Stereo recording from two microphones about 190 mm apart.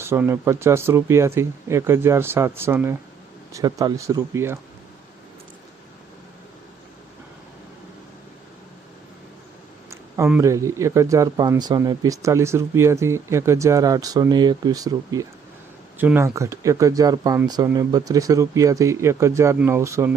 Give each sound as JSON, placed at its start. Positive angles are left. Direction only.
{"t": 0.0, "sound": "speech", "side_deg": -15}
{"t": 9.9, "sound": "speech", "side_deg": -10}